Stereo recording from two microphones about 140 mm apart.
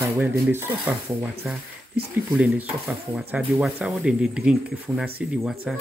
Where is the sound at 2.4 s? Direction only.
10° right (ahead or behind).